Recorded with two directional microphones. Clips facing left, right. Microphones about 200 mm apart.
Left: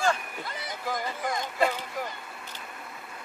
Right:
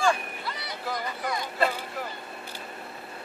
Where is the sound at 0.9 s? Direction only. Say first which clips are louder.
Even; 45° left (ahead or behind).